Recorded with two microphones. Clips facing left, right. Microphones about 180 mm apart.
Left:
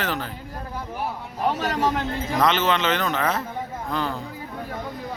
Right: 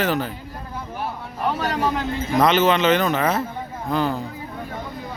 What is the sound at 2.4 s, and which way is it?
Speech, 10° right (ahead or behind).